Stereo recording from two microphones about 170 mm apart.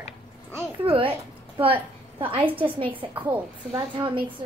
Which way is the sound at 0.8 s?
30° right (ahead or behind).